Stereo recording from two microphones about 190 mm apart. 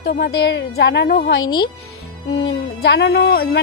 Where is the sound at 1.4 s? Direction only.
25° left (ahead or behind).